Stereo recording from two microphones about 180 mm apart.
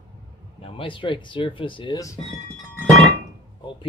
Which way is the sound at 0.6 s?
30° left (ahead or behind).